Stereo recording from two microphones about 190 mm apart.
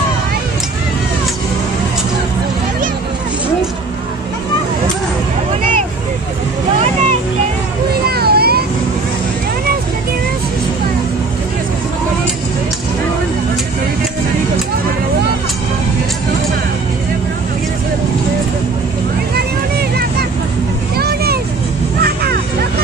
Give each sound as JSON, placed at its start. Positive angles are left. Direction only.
{"t": 8.1, "sound": "vehicle", "side_deg": -55}
{"t": 20.9, "sound": "vehicle", "side_deg": -55}
{"t": 22.0, "sound": "music", "side_deg": -55}